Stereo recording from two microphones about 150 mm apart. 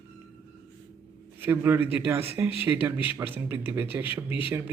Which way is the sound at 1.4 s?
15° right (ahead or behind).